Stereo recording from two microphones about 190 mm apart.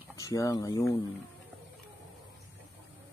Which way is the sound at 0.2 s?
20° left (ahead or behind).